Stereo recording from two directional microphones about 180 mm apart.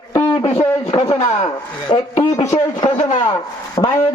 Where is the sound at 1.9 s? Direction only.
30° left (ahead or behind).